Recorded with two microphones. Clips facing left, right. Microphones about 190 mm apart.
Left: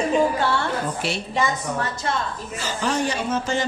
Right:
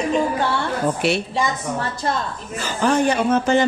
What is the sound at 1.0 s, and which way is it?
Speech, 65° right (ahead or behind).